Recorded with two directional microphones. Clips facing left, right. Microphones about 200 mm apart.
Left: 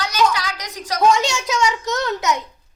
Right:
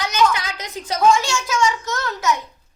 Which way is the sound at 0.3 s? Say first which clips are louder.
Left 1 dB; 25° right (ahead or behind).